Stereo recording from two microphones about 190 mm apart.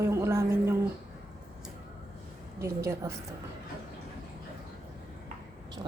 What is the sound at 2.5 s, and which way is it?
Speech, 15° right (ahead or behind).